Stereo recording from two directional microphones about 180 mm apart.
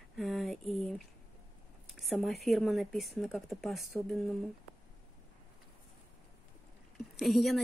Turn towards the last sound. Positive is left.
turn(degrees=0)  # may be behind; listen again after turning